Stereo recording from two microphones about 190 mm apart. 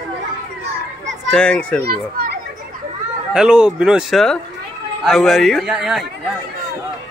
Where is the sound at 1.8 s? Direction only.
55° right (ahead or behind).